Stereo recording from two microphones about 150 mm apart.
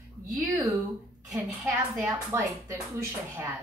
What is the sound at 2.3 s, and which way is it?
Speech, 15° right (ahead or behind).